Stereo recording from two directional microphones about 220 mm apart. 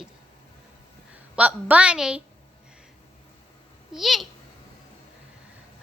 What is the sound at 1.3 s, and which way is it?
Speech, 5° right (ahead or behind).